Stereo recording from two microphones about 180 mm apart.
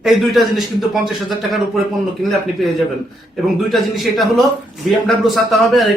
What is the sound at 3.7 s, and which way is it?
Speech, centre (ahead or behind).